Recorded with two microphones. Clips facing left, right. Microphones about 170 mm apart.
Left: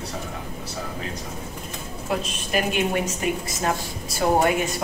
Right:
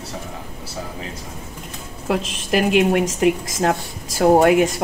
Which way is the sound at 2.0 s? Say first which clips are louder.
Right 6 dB; 90° right.